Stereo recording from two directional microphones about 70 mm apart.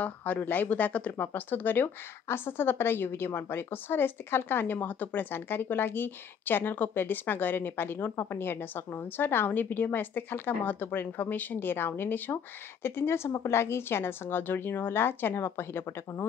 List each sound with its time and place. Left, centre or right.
0.0 s a woman's voice: left